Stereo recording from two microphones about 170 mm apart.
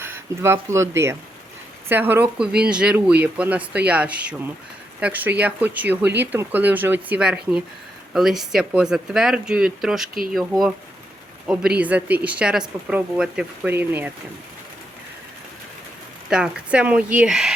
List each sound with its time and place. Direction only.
0.0 s speech: 15° right (ahead or behind)
16.3 s speech: 5° right (ahead or behind)